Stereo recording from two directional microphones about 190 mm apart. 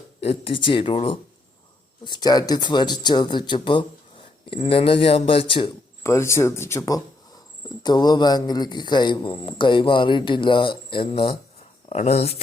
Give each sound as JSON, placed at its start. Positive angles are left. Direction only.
{"t": 0.2, "sound": "a man's voice", "side_deg": 30}
{"t": 6.0, "sound": "a man's voice", "side_deg": 15}